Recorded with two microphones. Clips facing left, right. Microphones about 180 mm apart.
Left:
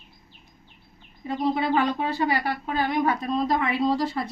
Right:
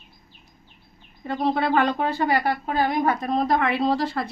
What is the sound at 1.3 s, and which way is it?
Speech, 65° right (ahead or behind).